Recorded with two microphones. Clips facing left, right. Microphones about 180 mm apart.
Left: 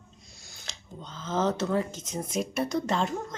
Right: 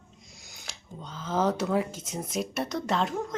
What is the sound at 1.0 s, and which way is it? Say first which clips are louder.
Speech: right 1 dB; 10° right (ahead or behind).